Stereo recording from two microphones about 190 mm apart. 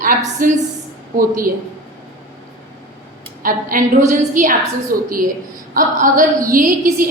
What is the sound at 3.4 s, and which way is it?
A woman's voice, 45° right (ahead or behind).